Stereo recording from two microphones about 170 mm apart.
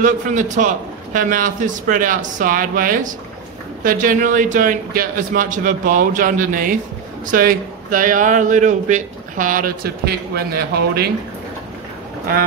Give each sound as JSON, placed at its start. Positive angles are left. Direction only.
{"t": 0.0, "sound": "a man's voice", "side_deg": -45}